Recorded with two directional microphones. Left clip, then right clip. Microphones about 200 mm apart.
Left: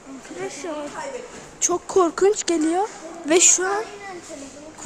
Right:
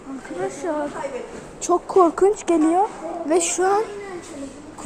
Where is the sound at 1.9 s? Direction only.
30° left (ahead or behind).